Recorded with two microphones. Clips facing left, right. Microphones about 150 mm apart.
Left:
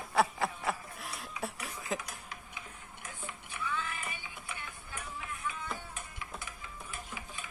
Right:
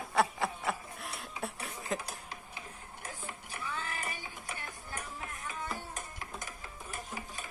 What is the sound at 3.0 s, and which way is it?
Music, 40° right (ahead or behind).